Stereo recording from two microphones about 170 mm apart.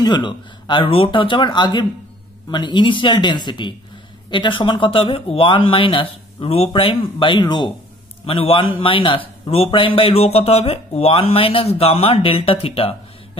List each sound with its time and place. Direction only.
0.0 s a man's voice: 25° left (ahead or behind)